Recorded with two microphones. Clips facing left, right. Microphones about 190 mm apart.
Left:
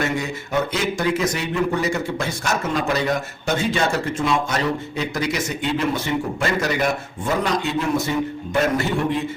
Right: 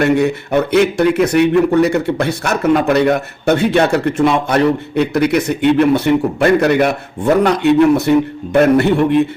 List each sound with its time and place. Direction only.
0.0 s speech: 60° right (ahead or behind)